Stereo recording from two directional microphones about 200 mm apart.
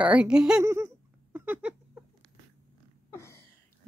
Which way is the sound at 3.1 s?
15° left (ahead or behind).